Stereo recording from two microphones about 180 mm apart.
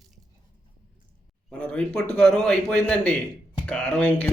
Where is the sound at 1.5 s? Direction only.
5° left (ahead or behind).